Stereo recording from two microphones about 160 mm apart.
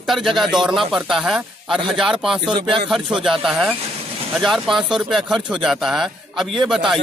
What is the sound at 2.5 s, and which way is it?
Speech, 30° right (ahead or behind).